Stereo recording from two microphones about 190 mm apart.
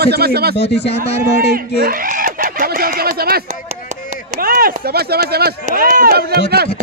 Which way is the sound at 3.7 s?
40° right (ahead or behind).